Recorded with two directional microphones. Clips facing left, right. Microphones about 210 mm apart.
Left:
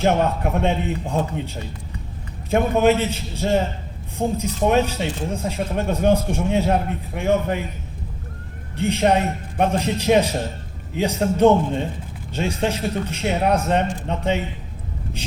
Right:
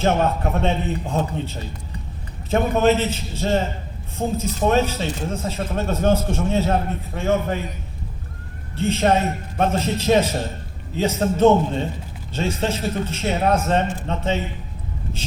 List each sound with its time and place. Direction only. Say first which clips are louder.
0.0 s speech: left 1 dB; 15° left (ahead or behind)
8.7 s speech: even; 15° left (ahead or behind)